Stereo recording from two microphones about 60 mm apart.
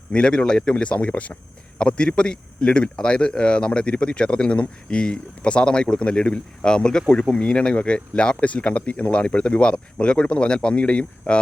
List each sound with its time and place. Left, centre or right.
0.1 s speech: centre